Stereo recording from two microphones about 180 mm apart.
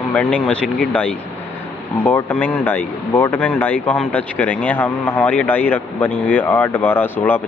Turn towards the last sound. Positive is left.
turn(degrees=10)  # may be behind; listen again after turning